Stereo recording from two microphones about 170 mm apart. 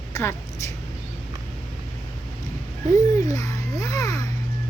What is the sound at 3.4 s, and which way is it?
Music, 20° left (ahead or behind).